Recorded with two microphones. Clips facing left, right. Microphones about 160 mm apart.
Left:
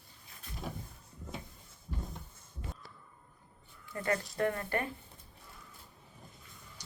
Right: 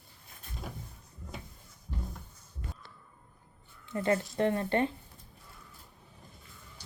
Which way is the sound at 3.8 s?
25° right (ahead or behind).